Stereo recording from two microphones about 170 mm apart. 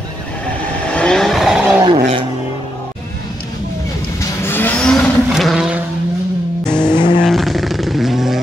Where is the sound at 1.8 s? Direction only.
35° right (ahead or behind).